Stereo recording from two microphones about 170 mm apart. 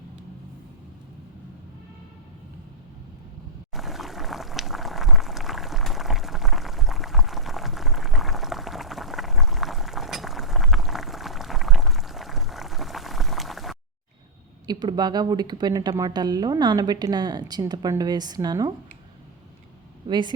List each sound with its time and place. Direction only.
3.8 s pour: centre (ahead or behind)
14.7 s speech: 25° right (ahead or behind)
20.1 s speech: 25° right (ahead or behind)